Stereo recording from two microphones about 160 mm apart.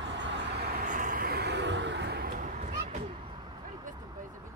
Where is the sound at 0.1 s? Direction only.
90° right.